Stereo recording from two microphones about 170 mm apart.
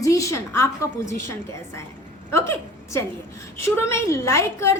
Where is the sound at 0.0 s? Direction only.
20° left (ahead or behind).